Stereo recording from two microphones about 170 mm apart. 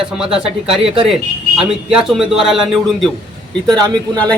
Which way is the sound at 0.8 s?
35° right (ahead or behind).